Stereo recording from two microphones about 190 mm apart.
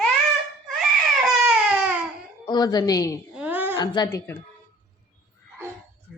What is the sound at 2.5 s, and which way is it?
Speech, 20° left (ahead or behind).